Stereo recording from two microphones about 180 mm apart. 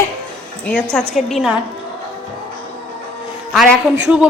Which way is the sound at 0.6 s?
5° left (ahead or behind).